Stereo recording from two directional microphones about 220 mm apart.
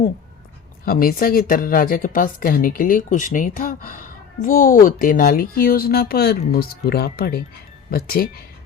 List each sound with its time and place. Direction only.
0.9 s speech: 40° left (ahead or behind)